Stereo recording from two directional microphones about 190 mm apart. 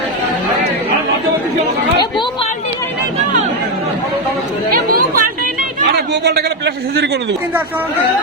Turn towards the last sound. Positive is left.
turn(degrees=-60)  # may be behind; listen again after turning